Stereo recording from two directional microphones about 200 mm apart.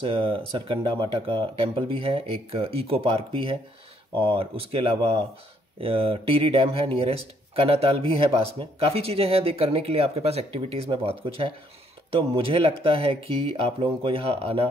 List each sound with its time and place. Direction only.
0.0 s speech: 25° right (ahead or behind)